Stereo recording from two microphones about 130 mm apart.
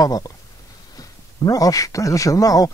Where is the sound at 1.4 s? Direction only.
25° left (ahead or behind).